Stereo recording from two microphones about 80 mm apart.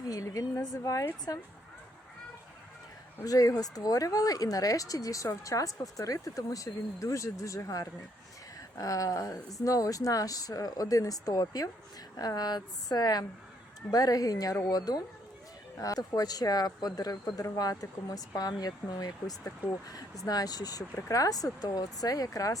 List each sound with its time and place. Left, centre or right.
0.0 s speech: left
3.2 s speech: left